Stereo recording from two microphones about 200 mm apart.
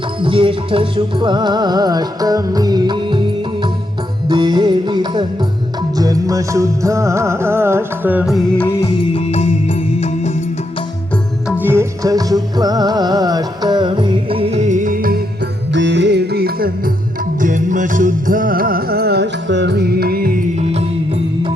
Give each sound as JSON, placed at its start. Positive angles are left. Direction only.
{"t": 0.2, "sound": "music", "side_deg": -25}
{"t": 9.0, "sound": "music", "side_deg": 30}
{"t": 11.6, "sound": "music", "side_deg": -10}
{"t": 15.7, "sound": "music", "side_deg": -60}